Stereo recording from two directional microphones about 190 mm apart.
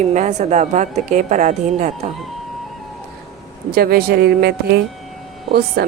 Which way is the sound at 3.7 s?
55° right (ahead or behind).